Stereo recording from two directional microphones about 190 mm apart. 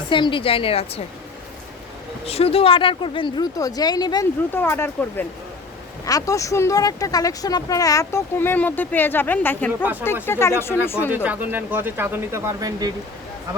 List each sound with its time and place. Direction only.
0.1 s speech: 25° left (ahead or behind)
2.2 s speech: 30° left (ahead or behind); by 11.1 s 10° left (ahead or behind)
11.1 s speech: 10° right (ahead or behind)